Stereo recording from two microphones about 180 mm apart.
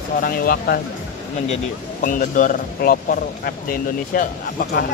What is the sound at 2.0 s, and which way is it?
A man's voice, 45° left (ahead or behind).